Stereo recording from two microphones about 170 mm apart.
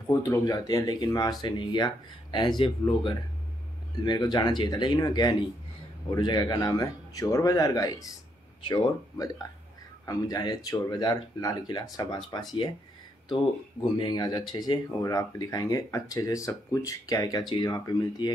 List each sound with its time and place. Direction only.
0.0 s speech: 20° left (ahead or behind)
13.9 s speech: 25° left (ahead or behind)